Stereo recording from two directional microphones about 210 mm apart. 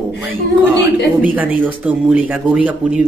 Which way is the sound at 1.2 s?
10° right (ahead or behind).